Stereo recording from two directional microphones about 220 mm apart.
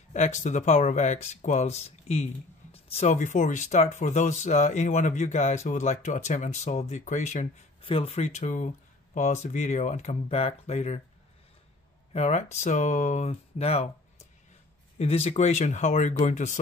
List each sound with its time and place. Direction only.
0.1 s speech: 30° left (ahead or behind)
12.1 s speech: 30° left (ahead or behind)
15.0 s speech: 30° left (ahead or behind)